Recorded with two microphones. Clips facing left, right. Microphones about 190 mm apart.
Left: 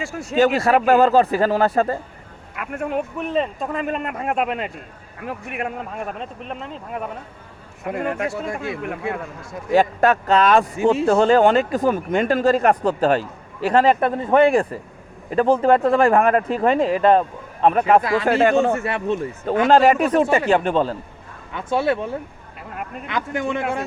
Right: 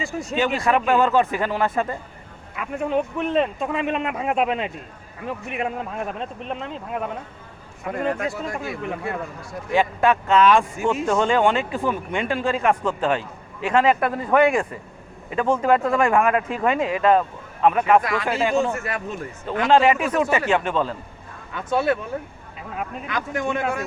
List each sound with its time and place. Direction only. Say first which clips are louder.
0.0 s speech: right 1 dB; 10° left (ahead or behind)
0.3 s speech: left 5 dB; 40° left (ahead or behind)
2.6 s speech: right 1 dB; 5° left (ahead or behind)
8.3 s speech: left 2 dB; 25° left (ahead or behind)
9.7 s speech: left 3 dB; 40° left (ahead or behind)
14.1 s speech: left 3 dB; 25° left (ahead or behind)
18.3 s speech: left 10 dB; 60° left (ahead or behind)
18.7 s speech: left 6 dB; 30° left (ahead or behind)